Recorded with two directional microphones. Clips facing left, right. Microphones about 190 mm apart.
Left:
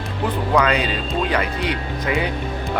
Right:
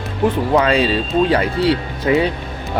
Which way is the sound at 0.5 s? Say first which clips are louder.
Right 2 dB; 30° right (ahead or behind).